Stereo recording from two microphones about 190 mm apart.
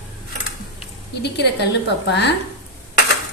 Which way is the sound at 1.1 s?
60° left (ahead or behind).